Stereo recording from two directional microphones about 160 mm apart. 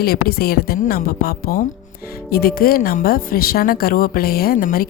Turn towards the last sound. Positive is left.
turn(degrees=65)  # may be behind; listen again after turning